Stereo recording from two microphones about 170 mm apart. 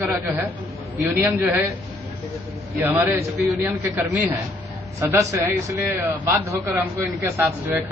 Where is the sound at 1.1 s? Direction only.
10° right (ahead or behind).